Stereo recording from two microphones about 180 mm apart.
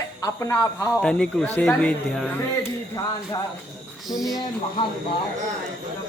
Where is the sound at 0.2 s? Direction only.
15° left (ahead or behind).